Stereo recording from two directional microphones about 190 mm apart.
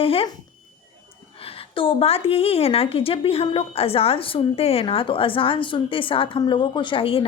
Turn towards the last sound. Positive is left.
turn(degrees=30)  # may be behind; listen again after turning